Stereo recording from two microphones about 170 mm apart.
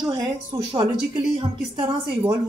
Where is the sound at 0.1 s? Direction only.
25° right (ahead or behind).